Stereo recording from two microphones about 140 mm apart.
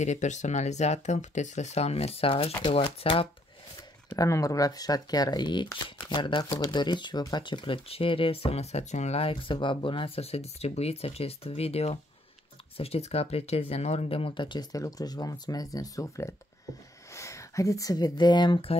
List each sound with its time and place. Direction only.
0.0 s speech: 55° left (ahead or behind)
4.1 s speech: 25° left (ahead or behind)